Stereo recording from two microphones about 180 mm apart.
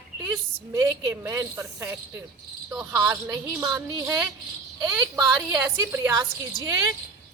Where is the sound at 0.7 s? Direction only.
20° right (ahead or behind).